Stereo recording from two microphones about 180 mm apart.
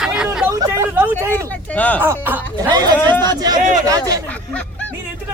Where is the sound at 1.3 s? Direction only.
10° left (ahead or behind).